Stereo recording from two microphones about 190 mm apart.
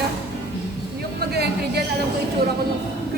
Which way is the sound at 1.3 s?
55° right (ahead or behind).